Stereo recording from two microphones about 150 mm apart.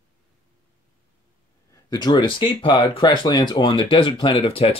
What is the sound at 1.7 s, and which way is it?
Speech, 25° left (ahead or behind).